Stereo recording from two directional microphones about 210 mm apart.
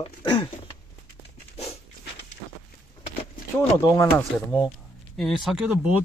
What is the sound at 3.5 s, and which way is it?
Speech, 15° left (ahead or behind).